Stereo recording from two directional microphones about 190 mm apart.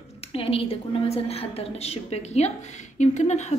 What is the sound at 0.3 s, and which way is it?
A woman's voice, 30° left (ahead or behind).